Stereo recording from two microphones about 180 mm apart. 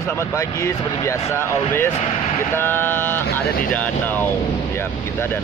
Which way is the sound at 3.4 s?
60° left (ahead or behind).